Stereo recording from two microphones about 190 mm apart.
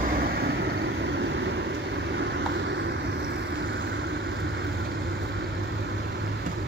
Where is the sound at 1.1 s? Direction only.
70° right (ahead or behind).